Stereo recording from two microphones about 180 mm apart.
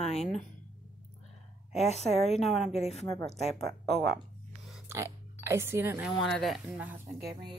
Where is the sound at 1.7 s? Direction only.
35° left (ahead or behind).